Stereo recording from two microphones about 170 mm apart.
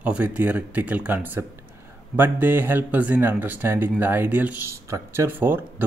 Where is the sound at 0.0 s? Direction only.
5° right (ahead or behind).